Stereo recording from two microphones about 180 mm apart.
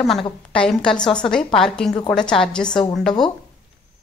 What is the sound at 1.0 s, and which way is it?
Speech, 25° left (ahead or behind).